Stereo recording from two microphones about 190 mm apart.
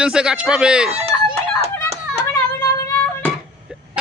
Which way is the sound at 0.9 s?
30° right (ahead or behind).